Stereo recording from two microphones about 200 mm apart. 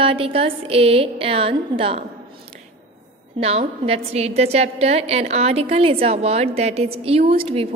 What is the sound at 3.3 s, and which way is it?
A woman's voice, 30° right (ahead or behind).